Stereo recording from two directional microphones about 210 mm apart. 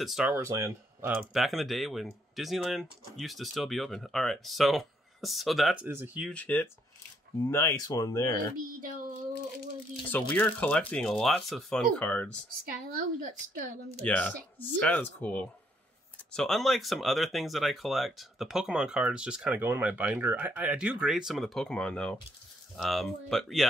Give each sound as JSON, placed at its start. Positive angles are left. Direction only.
{"t": 0.0, "sound": "speech", "side_deg": -5}
{"t": 6.3, "sound": "speech", "side_deg": 10}
{"t": 8.8, "sound": "a sound", "side_deg": -40}
{"t": 10.3, "sound": "speech", "side_deg": 10}
{"t": 13.2, "sound": "a woman's voice", "side_deg": -40}
{"t": 14.0, "sound": "speech", "side_deg": 5}